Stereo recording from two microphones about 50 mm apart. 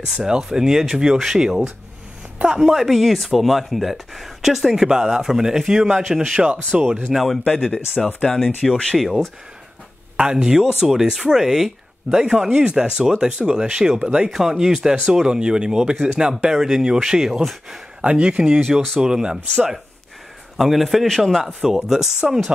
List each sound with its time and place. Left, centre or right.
0.0 s speech: centre
7.5 s speech: centre
10.1 s speech: centre
14.3 s speech: centre
15.2 s speech: centre
18.0 s speech: right
18.6 s speech: centre
18.9 s speech: centre
20.5 s speech: centre